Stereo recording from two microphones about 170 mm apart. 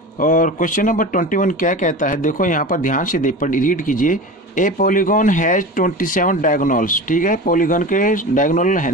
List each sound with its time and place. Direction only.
0.2 s speech: 50° left (ahead or behind)